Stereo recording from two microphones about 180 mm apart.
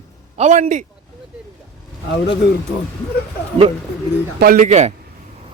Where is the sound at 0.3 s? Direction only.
40° right (ahead or behind).